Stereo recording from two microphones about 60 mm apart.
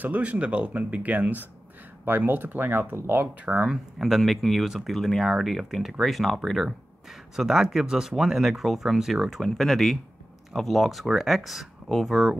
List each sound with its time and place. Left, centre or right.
0.0 s speech: right
3.3 s speech: right
3.6 s speech: centre